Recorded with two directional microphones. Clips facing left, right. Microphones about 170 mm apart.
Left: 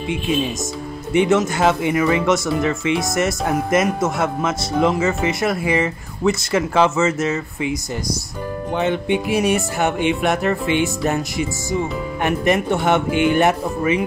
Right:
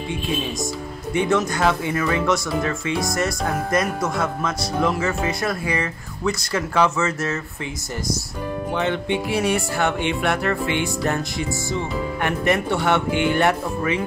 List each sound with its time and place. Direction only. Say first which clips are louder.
1.1 s speech: left 4 dB; 20° left (ahead or behind)
8.7 s music: left 4 dB; 15° left (ahead or behind)